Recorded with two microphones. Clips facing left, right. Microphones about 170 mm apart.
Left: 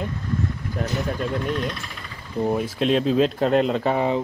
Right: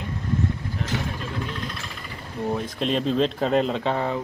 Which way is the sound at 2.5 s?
5° left (ahead or behind).